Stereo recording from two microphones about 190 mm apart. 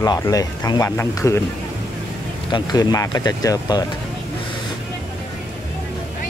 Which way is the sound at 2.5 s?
20° left (ahead or behind).